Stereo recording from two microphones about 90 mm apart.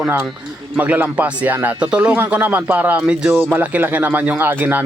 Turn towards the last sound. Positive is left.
turn(degrees=-20)  # may be behind; listen again after turning